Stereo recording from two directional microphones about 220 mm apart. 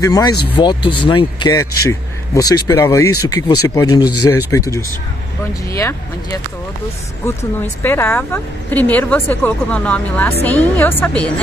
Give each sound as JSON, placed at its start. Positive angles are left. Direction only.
{"t": 0.0, "sound": "speech", "side_deg": 15}
{"t": 7.8, "sound": "speech", "side_deg": 10}